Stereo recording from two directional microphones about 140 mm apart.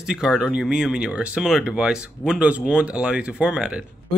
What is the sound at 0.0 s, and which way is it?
Speech, 5° right (ahead or behind).